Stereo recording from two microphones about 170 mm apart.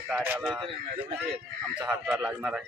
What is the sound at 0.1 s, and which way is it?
Speech, 10° right (ahead or behind).